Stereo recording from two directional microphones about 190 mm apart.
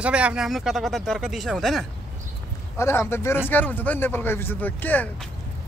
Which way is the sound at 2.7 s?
15° left (ahead or behind).